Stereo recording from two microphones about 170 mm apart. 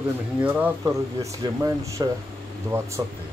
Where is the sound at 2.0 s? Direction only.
25° right (ahead or behind).